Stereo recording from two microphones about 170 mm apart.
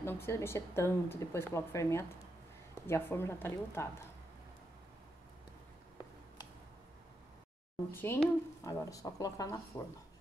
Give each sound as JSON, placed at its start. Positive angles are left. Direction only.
{"t": 0.0, "sound": "speech", "side_deg": 15}
{"t": 7.9, "sound": "speech", "side_deg": 10}